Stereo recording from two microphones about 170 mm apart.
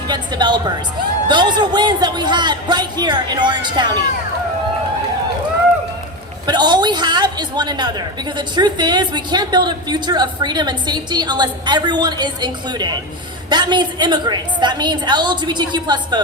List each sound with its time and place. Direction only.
0.1 s a woman's voice: 25° right (ahead or behind)
6.4 s a woman's voice: 25° right (ahead or behind)